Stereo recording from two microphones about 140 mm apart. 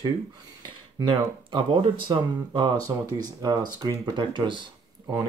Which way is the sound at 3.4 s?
30° right (ahead or behind).